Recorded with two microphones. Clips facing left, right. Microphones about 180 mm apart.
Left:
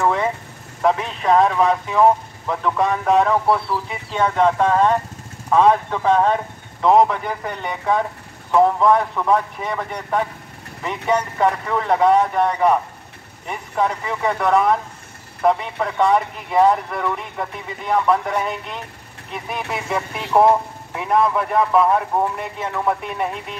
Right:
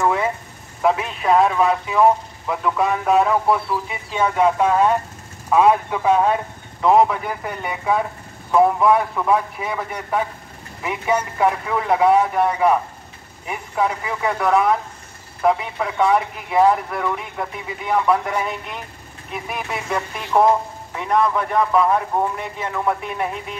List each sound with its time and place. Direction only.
0.0 s vehicle: 5° right (ahead or behind)
0.8 s speech: 5° right (ahead or behind)